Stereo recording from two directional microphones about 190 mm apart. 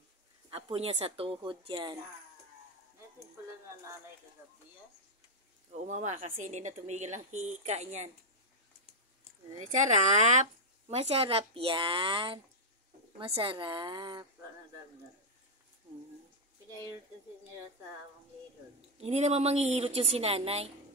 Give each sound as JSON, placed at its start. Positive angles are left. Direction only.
{"t": 0.5, "sound": "a woman's voice", "side_deg": -30}
{"t": 5.7, "sound": "a woman's voice", "side_deg": -35}
{"t": 9.6, "sound": "a woman's voice", "side_deg": -40}
{"t": 18.9, "sound": "a woman's voice", "side_deg": -35}